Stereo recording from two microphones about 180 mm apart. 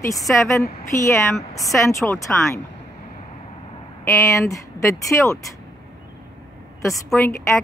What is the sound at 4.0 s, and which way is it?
Speech, 15° left (ahead or behind).